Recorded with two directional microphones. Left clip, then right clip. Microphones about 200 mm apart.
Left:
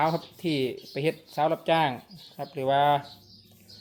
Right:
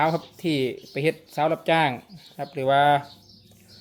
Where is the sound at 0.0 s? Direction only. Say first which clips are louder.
Right 3 dB; 15° right (ahead or behind).